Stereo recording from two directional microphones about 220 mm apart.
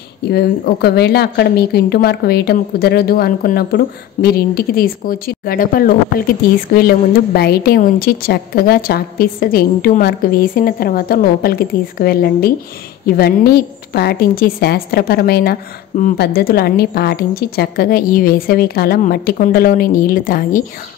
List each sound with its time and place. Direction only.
0.3 s a woman's voice: 45° left (ahead or behind)